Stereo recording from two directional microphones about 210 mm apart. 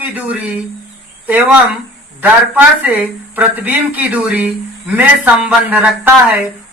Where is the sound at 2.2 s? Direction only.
5° right (ahead or behind).